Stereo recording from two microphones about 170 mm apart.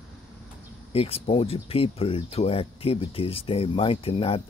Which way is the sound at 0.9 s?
35° left (ahead or behind).